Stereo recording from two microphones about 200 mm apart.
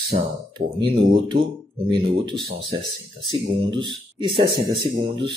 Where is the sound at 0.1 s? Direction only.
40° right (ahead or behind).